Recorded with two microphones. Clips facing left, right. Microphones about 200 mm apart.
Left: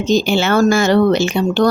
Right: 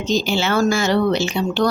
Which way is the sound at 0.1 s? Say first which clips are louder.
Left 5 dB; 55° left (ahead or behind).